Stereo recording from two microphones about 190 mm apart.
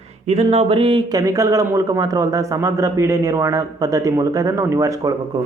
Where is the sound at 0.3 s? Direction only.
35° right (ahead or behind).